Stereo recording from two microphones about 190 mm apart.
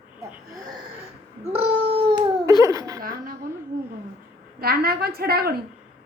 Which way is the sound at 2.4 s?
15° right (ahead or behind).